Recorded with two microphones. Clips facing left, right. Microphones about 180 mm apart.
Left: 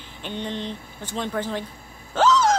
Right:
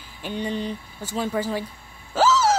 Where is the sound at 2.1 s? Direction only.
5° right (ahead or behind).